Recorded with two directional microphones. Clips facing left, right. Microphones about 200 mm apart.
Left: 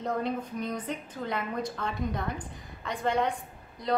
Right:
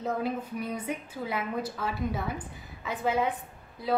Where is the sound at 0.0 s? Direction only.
5° right (ahead or behind).